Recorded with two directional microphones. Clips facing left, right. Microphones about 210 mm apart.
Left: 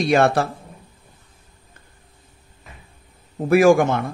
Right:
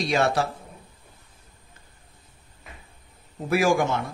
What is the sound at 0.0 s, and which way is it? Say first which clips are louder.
Speech: left 6 dB; 55° left (ahead or behind).